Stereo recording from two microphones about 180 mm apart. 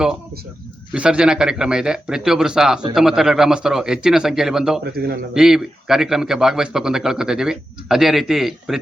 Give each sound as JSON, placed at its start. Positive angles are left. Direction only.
{"t": 0.9, "sound": "a man's voice", "side_deg": -5}
{"t": 4.9, "sound": "a man's voice", "side_deg": -60}
{"t": 5.3, "sound": "a man's voice", "side_deg": -5}